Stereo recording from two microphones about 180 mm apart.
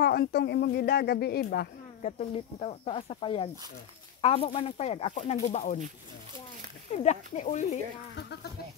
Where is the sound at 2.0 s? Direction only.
35° left (ahead or behind).